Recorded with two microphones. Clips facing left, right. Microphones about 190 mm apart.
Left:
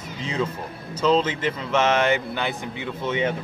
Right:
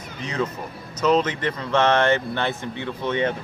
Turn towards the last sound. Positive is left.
turn(degrees=10)  # may be behind; listen again after turning